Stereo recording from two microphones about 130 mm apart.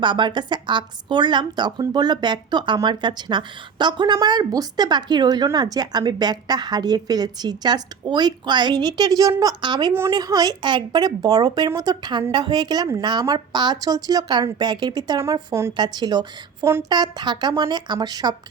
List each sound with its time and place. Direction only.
0.0 s a woman's voice: 35° right (ahead or behind)
9.9 s a woman's voice: 25° right (ahead or behind)